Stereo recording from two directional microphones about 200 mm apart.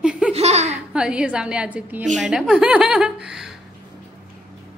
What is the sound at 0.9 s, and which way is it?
A woman's voice, 5° right (ahead or behind).